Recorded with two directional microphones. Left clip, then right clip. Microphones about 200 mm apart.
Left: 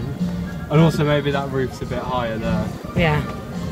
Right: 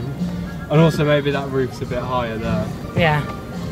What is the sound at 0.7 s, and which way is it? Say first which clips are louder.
Music: right 2 dB; 20° left (ahead or behind).